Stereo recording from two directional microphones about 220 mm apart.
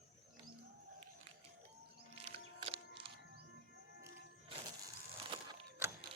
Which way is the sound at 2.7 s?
25° right (ahead or behind).